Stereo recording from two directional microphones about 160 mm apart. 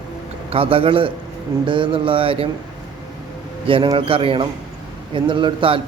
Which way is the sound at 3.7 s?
35° right (ahead or behind).